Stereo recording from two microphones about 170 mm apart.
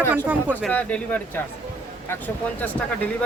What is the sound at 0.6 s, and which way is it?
Speech, 10° left (ahead or behind).